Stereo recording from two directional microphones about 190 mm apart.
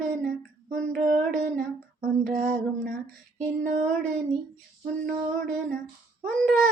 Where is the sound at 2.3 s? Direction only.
40° right (ahead or behind).